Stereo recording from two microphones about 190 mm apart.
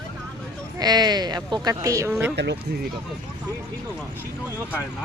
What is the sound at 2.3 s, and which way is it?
Speech, 65° right (ahead or behind).